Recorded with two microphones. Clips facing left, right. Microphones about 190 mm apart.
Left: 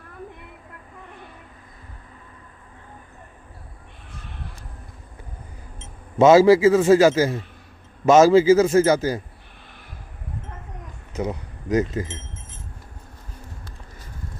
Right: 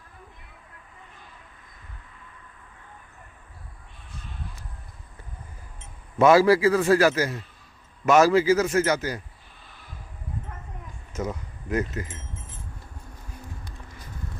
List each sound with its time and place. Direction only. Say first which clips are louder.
6.1 s a man's voice: left 4 dB; 25° left (ahead or behind)
11.3 s speech: left 8 dB; 20° left (ahead or behind)